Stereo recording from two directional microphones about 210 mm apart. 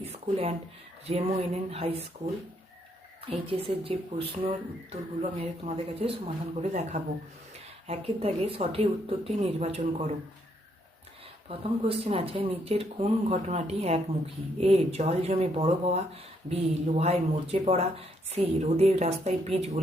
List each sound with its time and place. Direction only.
0.0 s speech: 30° right (ahead or behind)
3.2 s speech: 25° right (ahead or behind)
11.4 s speech: 30° right (ahead or behind)